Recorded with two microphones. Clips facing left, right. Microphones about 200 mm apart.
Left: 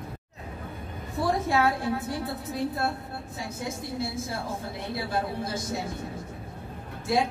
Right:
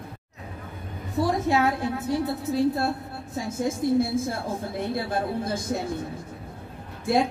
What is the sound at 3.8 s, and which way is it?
Speech, 50° right (ahead or behind).